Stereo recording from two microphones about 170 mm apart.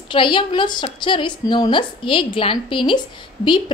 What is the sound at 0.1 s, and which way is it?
A woman's voice, 30° left (ahead or behind).